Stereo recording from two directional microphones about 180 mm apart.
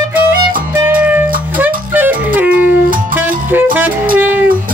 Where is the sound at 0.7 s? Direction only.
10° right (ahead or behind).